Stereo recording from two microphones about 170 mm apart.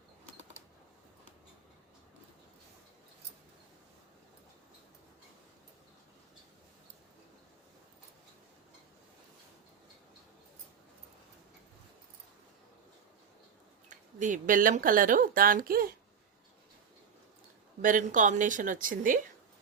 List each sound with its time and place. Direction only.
13.9 s speech: 45° right (ahead or behind)
17.8 s speech: 50° right (ahead or behind)